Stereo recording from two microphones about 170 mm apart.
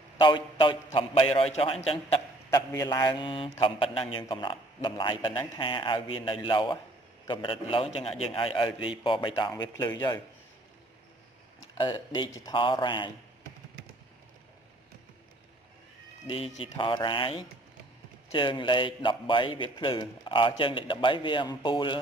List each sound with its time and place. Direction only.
0.2 s a man's voice: 30° left (ahead or behind)
2.5 s a man's voice: 20° left (ahead or behind)
11.7 s a man's voice: 30° left (ahead or behind)
16.3 s a man's voice: 30° left (ahead or behind)